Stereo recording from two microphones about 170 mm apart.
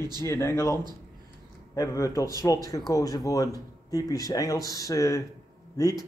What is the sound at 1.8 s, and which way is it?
Speech, 20° left (ahead or behind).